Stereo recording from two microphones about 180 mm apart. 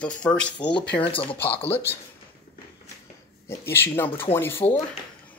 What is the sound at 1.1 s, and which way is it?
Speech, 30° left (ahead or behind).